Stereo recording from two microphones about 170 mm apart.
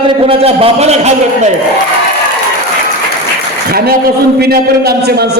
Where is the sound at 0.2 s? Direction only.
35° right (ahead or behind).